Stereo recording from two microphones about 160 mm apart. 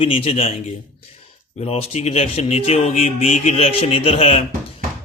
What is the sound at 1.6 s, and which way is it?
A man's voice, 40° left (ahead or behind).